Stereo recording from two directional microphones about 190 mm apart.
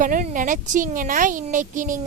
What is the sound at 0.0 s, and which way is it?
Speech, 40° right (ahead or behind).